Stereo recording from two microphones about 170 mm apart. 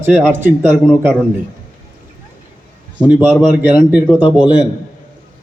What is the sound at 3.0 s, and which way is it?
A man's voice, 10° right (ahead or behind).